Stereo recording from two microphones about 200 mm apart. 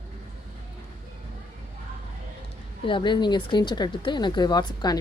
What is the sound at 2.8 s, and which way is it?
Speech, 25° left (ahead or behind).